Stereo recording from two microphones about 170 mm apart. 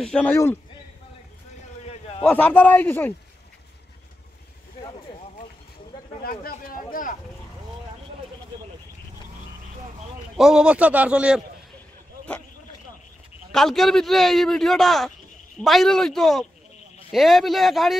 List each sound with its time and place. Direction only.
0.0 s a man's voice: 5° left (ahead or behind)
1.9 s a sound: 35° left (ahead or behind)
2.2 s a man's voice: 10° left (ahead or behind)
6.2 s speech: 60° left (ahead or behind)
10.3 s a man's voice: 5° right (ahead or behind)
13.5 s a man's voice: centre (ahead or behind)